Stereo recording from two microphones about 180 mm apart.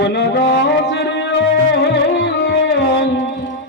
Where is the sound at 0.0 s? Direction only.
70° left (ahead or behind).